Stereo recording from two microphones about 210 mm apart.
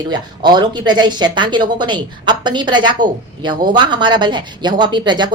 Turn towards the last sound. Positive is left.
turn(degrees=-20)  # may be behind; listen again after turning